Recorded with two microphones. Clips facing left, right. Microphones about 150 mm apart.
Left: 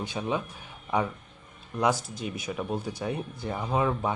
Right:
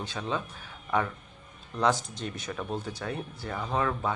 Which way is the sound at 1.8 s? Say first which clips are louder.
Even; 10° left (ahead or behind).